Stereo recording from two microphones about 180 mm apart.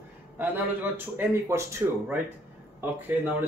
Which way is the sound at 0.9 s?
10° right (ahead or behind).